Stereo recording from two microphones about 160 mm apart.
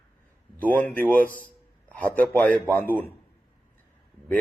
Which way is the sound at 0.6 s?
10° left (ahead or behind).